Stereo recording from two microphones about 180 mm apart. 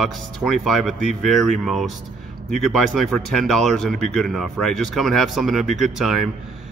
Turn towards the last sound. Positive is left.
turn(degrees=0)  # may be behind; listen again after turning